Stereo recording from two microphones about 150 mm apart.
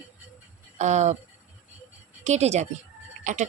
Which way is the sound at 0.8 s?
50° right (ahead or behind).